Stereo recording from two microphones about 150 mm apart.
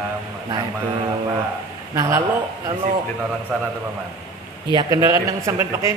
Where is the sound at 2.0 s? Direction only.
20° right (ahead or behind).